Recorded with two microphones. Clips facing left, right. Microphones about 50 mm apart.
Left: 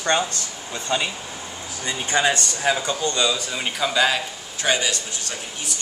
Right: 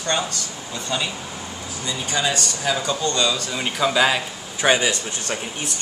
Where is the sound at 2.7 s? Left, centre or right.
Centre.